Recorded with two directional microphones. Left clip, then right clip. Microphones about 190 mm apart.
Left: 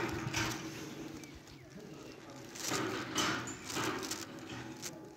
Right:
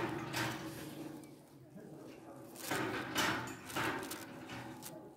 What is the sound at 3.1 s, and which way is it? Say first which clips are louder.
Hammer: even; 5° left (ahead or behind).